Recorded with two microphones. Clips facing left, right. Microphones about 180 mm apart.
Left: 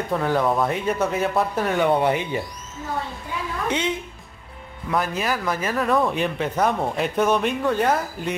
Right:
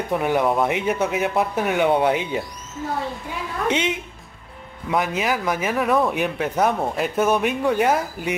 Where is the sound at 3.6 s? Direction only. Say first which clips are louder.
Right 3 dB; 20° right (ahead or behind).